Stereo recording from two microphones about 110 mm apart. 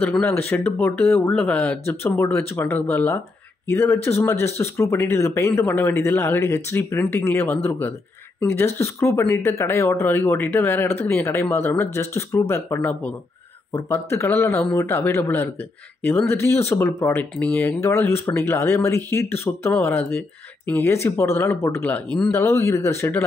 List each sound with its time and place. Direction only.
0.3 s speech: 20° left (ahead or behind)
1.9 s speech: 20° left (ahead or behind)
17.6 s speech: 25° left (ahead or behind)